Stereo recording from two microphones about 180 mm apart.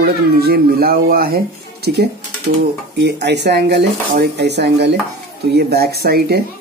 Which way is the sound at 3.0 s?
70° right (ahead or behind).